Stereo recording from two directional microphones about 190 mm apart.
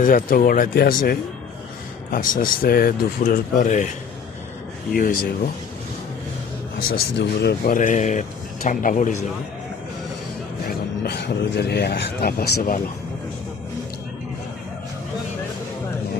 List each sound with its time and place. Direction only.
0.0 s speech: 45° left (ahead or behind)
4.9 s speech: 50° left (ahead or behind)
6.7 s speech: 60° left (ahead or behind)
10.7 s speech: 60° left (ahead or behind)